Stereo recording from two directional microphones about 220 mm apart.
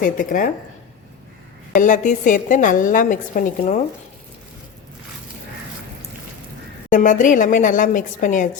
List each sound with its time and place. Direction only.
0.0 s a woman's voice: 40° left (ahead or behind)
1.7 s a woman's voice: 35° left (ahead or behind)
6.9 s a woman's voice: 35° left (ahead or behind)